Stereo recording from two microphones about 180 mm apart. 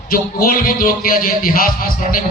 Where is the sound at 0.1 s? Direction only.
55° left (ahead or behind).